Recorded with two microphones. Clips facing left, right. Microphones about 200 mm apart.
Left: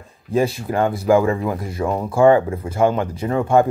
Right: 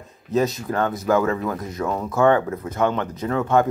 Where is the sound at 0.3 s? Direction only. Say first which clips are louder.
Left 2 dB; 10° left (ahead or behind).